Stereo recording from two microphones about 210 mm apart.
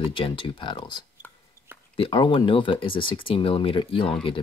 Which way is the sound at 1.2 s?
10° left (ahead or behind).